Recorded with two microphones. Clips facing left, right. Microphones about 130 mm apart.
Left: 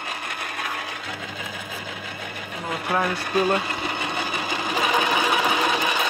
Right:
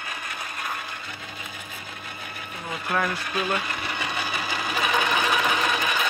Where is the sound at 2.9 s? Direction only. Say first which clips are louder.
Left 3 dB; 35° left (ahead or behind).